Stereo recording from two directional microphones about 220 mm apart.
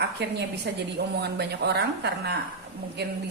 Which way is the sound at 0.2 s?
50° right (ahead or behind).